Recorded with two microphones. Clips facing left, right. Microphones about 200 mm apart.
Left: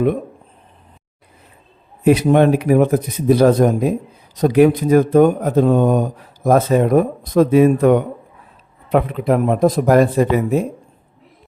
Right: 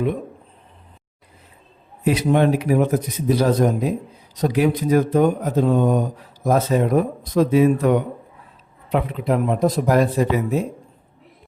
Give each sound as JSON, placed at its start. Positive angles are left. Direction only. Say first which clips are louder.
{"t": 2.0, "sound": "speech", "louder": "left 5 dB", "side_deg": 55}